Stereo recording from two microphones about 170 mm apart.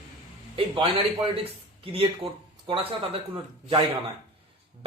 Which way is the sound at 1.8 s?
35° right (ahead or behind).